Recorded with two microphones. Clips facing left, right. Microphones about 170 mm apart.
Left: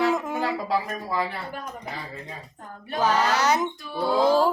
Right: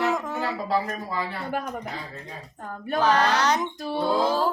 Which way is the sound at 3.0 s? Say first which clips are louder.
Even; 10° left (ahead or behind).